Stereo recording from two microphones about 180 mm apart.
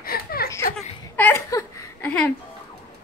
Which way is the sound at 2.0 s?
5° left (ahead or behind).